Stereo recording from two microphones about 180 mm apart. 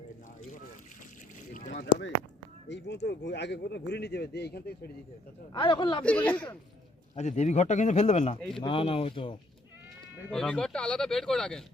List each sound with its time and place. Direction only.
1.7 s speech: 80° left; by 4.9 s 60° left (ahead or behind)
5.5 s speech: 25° left (ahead or behind)
6.0 s speech: 5° left (ahead or behind)
7.2 s speech: 40° left (ahead or behind)
8.4 s speech: 5° left (ahead or behind)
8.6 s speech: 30° left (ahead or behind)
10.3 s speech: 5° left (ahead or behind)